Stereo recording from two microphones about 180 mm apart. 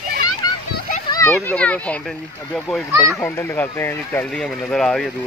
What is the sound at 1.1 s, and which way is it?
A child's voice, 15° left (ahead or behind).